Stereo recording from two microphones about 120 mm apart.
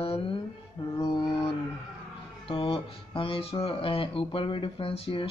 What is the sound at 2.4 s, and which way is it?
Speech, 50° left (ahead or behind).